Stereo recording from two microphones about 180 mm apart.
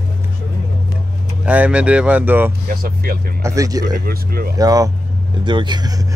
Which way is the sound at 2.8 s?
55° right (ahead or behind).